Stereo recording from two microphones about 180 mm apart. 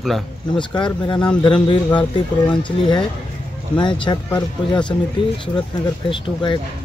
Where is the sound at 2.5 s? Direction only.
25° left (ahead or behind).